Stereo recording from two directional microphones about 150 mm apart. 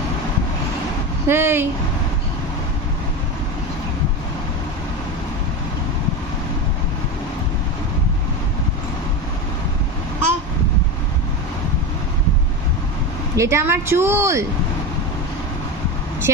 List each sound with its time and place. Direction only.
1.2 s a woman's voice: 15° right (ahead or behind)
13.4 s a woman's voice: 15° right (ahead or behind)